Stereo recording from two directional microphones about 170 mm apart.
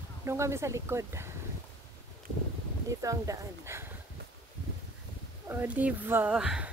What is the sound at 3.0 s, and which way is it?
Speech, 20° right (ahead or behind).